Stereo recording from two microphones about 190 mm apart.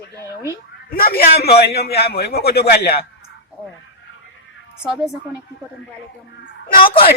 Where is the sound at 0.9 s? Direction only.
50° left (ahead or behind).